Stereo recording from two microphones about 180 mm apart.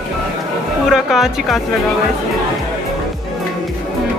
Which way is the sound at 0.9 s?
Centre (ahead or behind).